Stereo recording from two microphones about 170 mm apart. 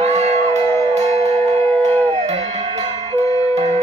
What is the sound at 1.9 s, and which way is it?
Howl, 40° right (ahead or behind).